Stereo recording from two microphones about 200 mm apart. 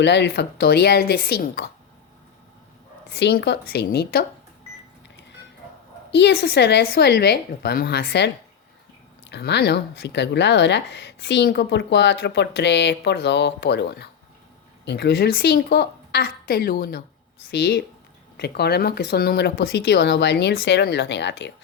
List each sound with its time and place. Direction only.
0.0 s a woman's voice: 60° left (ahead or behind)
3.1 s a woman's voice: 55° left (ahead or behind)
6.1 s a woman's voice: 60° left (ahead or behind)